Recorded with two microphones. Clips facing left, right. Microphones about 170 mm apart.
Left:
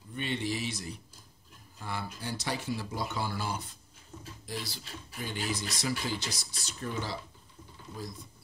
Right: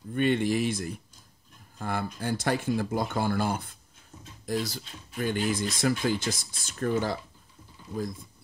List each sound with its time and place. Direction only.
0.1 s speech: 55° right (ahead or behind)